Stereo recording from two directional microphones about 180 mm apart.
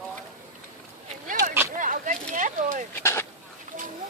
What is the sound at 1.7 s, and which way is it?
Chop, 45° right (ahead or behind).